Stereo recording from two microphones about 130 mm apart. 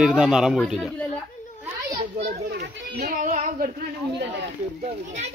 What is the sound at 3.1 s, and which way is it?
Female singing, 75° right (ahead or behind).